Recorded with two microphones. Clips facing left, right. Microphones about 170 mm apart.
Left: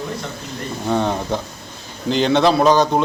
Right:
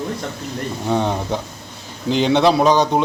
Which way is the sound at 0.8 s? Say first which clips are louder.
Left 1 dB; 15° right (ahead or behind).